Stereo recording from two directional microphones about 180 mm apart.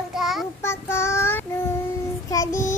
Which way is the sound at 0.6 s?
15° left (ahead or behind).